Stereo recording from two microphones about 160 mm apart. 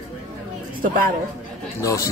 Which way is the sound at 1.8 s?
20° left (ahead or behind).